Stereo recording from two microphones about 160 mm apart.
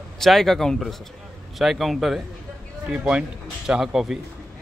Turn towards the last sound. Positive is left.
turn(degrees=0)  # may be behind; listen again after turning